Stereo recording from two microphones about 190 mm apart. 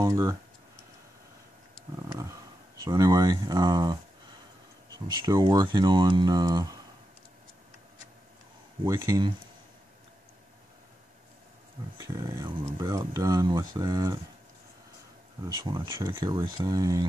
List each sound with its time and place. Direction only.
0.0 s speech: 15° right (ahead or behind)
2.8 s speech: 20° right (ahead or behind)
8.8 s speech: 15° right (ahead or behind)
12.1 s speech: 15° right (ahead or behind)
15.4 s speech: 20° right (ahead or behind)